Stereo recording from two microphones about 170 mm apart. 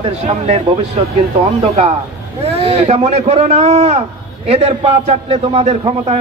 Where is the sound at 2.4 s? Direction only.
35° right (ahead or behind).